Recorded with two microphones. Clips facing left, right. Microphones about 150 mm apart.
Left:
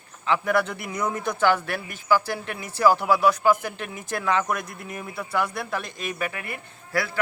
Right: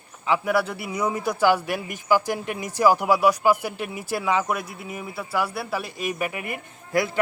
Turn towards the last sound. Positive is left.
turn(degrees=-15)  # may be behind; listen again after turning